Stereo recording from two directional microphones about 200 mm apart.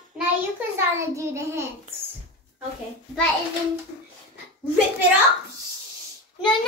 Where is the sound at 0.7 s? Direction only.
15° right (ahead or behind).